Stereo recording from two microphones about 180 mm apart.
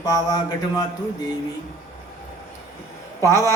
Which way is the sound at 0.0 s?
20° left (ahead or behind).